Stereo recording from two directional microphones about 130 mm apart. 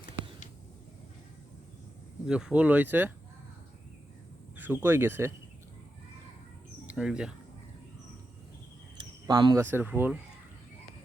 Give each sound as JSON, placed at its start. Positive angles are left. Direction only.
{"t": 2.2, "sound": "speech", "side_deg": -5}
{"t": 4.5, "sound": "speech", "side_deg": -15}
{"t": 6.8, "sound": "speech", "side_deg": -5}
{"t": 9.0, "sound": "cricket", "side_deg": -35}
{"t": 9.7, "sound": "speech", "side_deg": -15}